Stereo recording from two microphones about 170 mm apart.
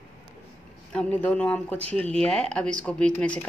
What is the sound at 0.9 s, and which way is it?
Speech, 10° left (ahead or behind).